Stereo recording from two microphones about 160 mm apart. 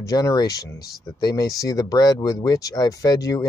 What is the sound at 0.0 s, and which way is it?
Speech, 20° left (ahead or behind).